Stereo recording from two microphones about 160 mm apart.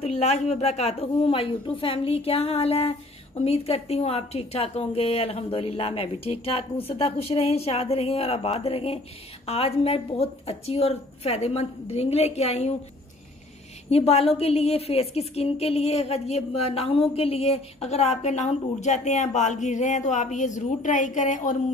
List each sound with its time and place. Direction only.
0.0 s a woman's voice: 40° left (ahead or behind)
13.8 s a woman's voice: 40° left (ahead or behind)